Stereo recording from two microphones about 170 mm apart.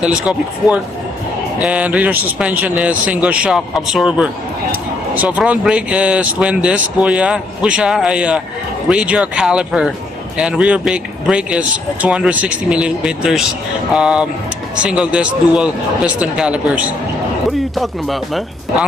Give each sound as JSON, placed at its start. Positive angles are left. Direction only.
{"t": 0.0, "sound": "speech", "side_deg": -5}